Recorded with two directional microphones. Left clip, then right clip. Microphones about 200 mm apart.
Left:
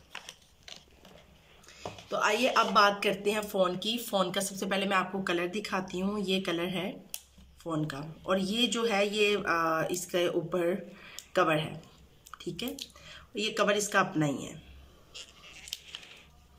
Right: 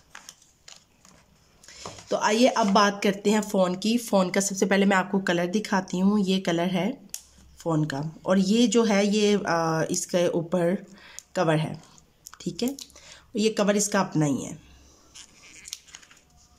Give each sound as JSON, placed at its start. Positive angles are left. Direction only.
{"t": 1.7, "sound": "speech", "side_deg": -30}
{"t": 15.1, "sound": "scissors", "side_deg": 5}